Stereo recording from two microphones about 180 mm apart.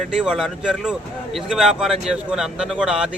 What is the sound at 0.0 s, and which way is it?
A man's voice, centre (ahead or behind).